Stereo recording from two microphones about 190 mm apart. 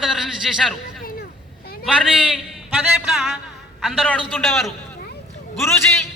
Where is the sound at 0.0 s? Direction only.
Centre (ahead or behind).